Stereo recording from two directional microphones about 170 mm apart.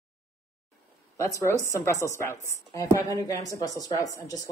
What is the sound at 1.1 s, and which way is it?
A woman's voice, 15° left (ahead or behind).